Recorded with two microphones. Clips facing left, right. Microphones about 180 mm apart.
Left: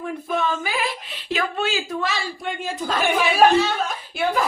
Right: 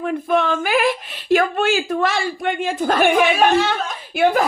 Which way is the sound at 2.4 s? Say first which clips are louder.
Right 7 dB; 70° right (ahead or behind).